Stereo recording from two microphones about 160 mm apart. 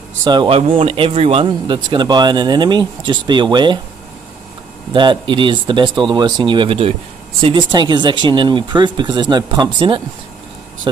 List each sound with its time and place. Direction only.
0.2 s speech: 25° right (ahead or behind)
4.9 s speech: 30° right (ahead or behind)